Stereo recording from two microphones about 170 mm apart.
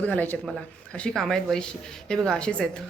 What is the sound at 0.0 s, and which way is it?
A man's voice, 10° left (ahead or behind).